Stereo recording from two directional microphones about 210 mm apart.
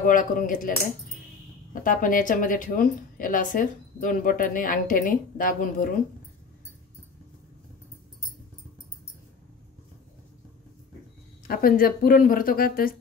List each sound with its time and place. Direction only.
0.0 s a woman's voice: 40° left (ahead or behind)
11.4 s speech: 45° left (ahead or behind)